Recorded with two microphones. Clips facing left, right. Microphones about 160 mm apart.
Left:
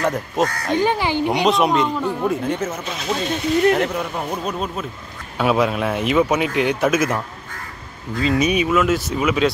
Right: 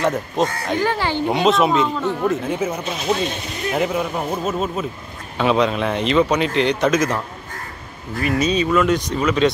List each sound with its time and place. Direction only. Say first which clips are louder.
0.0 s speech: right 1 dB; centre (ahead or behind)
0.7 s speech: left 2 dB; 15° left (ahead or behind)
1.3 s speech: right 2 dB; centre (ahead or behind); by 3.2 s 20° right (ahead or behind)
3.7 s speech: even; 5° right (ahead or behind)
5.4 s speech: right 1 dB; 5° left (ahead or behind)